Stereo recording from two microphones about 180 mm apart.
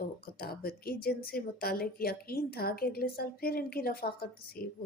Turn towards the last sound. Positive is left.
turn(degrees=55)  # may be behind; listen again after turning